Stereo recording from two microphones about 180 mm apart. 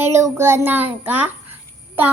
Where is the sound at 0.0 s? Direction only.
15° right (ahead or behind).